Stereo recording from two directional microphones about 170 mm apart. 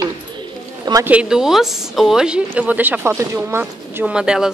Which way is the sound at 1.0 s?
5° right (ahead or behind).